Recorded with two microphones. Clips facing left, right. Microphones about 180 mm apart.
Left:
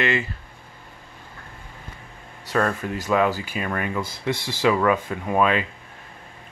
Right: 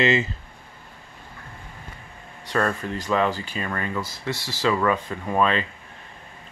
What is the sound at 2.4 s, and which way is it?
Speech, 5° left (ahead or behind).